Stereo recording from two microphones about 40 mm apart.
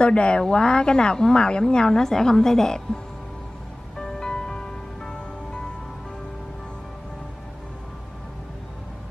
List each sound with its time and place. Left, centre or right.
0.0 s a woman's voice: left
4.0 s music: centre